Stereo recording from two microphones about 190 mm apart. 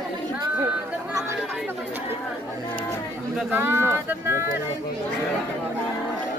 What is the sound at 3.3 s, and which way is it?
Speech, 10° right (ahead or behind).